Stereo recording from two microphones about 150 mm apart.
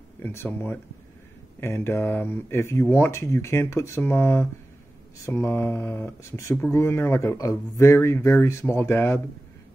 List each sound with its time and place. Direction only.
0.2 s speech: 15° left (ahead or behind)
1.6 s speech: 15° left (ahead or behind)